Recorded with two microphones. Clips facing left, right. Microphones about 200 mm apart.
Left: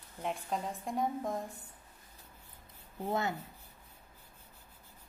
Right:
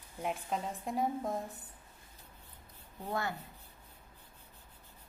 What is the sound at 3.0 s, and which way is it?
Speech, 20° left (ahead or behind).